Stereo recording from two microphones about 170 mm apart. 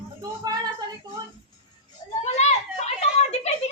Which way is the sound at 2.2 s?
40° left (ahead or behind).